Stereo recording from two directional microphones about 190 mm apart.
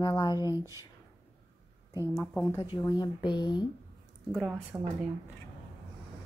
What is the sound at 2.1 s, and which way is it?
Speech, 10° left (ahead or behind).